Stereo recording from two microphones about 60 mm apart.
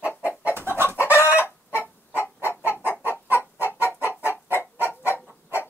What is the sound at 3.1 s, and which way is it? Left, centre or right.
Chicken, left.